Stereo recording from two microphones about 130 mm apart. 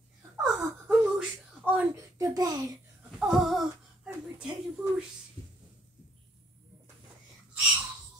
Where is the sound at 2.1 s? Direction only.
25° right (ahead or behind).